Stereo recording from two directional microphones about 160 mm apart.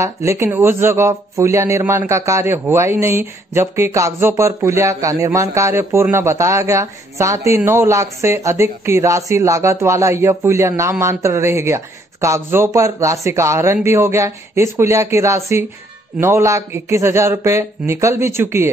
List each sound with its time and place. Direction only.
0.0 s speech: 15° right (ahead or behind)